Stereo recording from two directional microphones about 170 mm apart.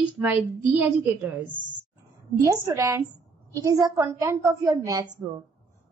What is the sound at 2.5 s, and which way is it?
A child's voice, 20° right (ahead or behind).